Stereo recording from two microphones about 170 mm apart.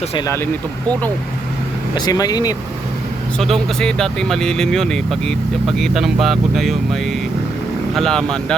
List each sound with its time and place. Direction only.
2.0 s speech: 20° left (ahead or behind)
3.3 s speech: 5° left (ahead or behind)